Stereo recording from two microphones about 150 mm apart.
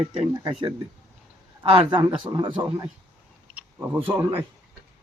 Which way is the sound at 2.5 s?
15° right (ahead or behind).